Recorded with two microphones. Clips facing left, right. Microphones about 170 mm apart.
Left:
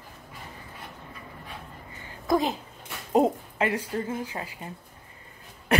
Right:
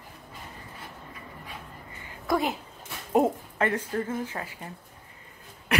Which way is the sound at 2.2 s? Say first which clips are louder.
Left 2 dB; 20° left (ahead or behind).